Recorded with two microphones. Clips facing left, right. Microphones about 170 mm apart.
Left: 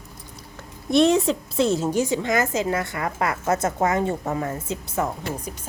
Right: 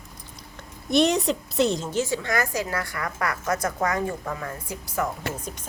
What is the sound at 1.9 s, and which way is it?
A woman's voice, 20° left (ahead or behind).